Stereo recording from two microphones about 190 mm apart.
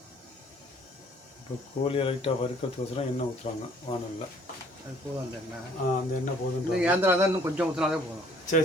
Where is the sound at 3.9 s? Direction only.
25° left (ahead or behind).